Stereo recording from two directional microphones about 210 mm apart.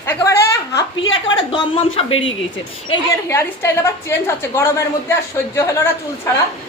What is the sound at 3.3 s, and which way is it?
A woman's voice, 15° left (ahead or behind).